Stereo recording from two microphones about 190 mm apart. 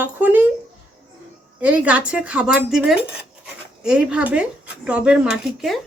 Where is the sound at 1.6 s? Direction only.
5° right (ahead or behind).